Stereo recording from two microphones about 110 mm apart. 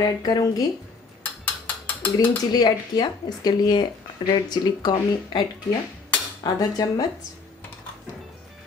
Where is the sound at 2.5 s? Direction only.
35° left (ahead or behind).